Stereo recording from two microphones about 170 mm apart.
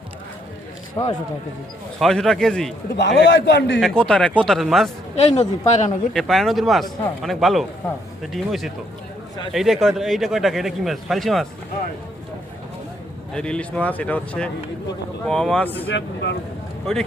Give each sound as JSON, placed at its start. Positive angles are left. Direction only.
{"t": 1.0, "sound": "a man's voice", "side_deg": 25}
{"t": 2.0, "sound": "a man's voice", "side_deg": 0}
{"t": 2.9, "sound": "a man's voice", "side_deg": 90}
{"t": 3.8, "sound": "a man's voice", "side_deg": 5}
{"t": 5.1, "sound": "speech", "side_deg": 40}
{"t": 6.1, "sound": "a man's voice", "side_deg": 0}
{"t": 13.3, "sound": "a man's voice", "side_deg": 5}
{"t": 15.9, "sound": "speech", "side_deg": 85}